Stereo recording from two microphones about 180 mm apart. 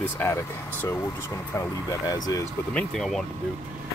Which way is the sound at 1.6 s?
15° left (ahead or behind).